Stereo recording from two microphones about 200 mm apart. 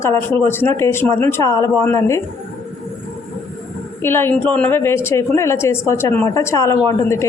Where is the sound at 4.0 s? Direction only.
10° left (ahead or behind).